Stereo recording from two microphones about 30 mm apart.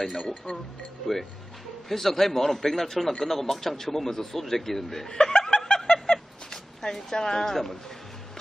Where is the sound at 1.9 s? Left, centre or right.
Centre.